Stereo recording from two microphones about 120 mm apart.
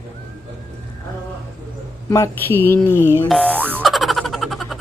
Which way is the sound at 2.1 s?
25° left (ahead or behind).